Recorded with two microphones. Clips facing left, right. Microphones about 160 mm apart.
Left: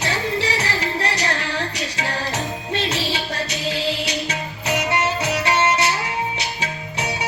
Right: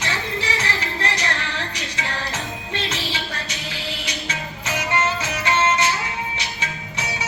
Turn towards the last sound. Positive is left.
turn(degrees=15)  # may be behind; listen again after turning